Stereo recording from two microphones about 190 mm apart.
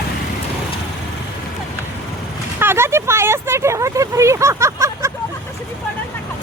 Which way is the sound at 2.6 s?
10° right (ahead or behind).